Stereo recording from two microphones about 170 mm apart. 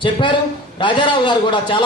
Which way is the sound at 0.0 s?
30° left (ahead or behind).